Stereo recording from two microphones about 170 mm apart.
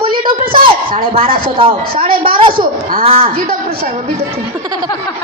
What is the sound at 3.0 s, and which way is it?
Speech, 35° right (ahead or behind).